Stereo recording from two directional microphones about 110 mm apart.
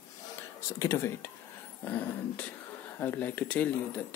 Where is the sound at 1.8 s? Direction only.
15° left (ahead or behind).